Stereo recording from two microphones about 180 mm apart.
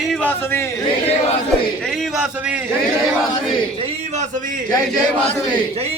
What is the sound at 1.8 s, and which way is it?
Speech, centre (ahead or behind).